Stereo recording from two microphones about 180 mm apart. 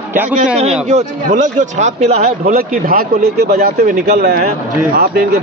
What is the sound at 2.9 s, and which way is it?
A man's voice, 55° right (ahead or behind).